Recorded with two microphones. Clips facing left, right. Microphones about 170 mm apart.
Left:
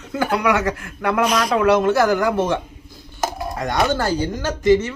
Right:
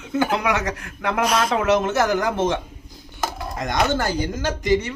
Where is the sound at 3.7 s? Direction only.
20° right (ahead or behind).